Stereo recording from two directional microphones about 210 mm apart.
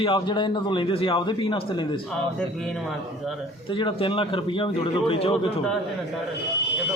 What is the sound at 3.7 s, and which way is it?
A man's voice, 25° left (ahead or behind).